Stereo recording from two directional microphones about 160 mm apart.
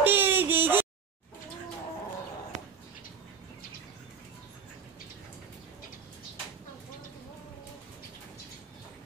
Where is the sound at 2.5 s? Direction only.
50° right (ahead or behind).